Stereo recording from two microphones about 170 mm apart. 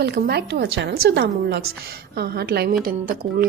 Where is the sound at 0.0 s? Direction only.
70° right (ahead or behind).